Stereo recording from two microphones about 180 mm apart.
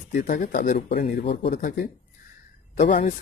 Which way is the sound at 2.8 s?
45° left (ahead or behind).